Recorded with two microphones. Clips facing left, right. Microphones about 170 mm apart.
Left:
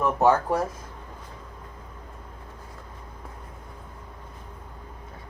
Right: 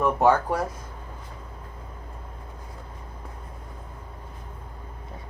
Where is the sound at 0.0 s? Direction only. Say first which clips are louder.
Even; centre (ahead or behind).